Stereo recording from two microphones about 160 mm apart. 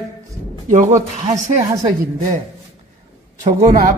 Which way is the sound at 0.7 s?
50° right (ahead or behind).